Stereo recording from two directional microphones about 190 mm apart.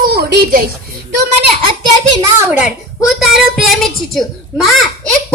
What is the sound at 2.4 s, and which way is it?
A child's voice, 10° right (ahead or behind).